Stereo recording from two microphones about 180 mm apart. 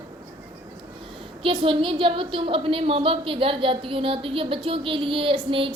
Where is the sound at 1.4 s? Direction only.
25° right (ahead or behind).